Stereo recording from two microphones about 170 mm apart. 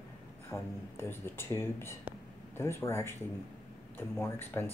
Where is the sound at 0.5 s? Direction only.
Centre (ahead or behind).